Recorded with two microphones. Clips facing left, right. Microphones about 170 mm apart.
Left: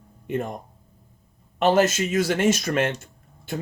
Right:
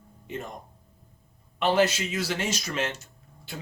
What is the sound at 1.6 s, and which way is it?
Speech, 45° left (ahead or behind).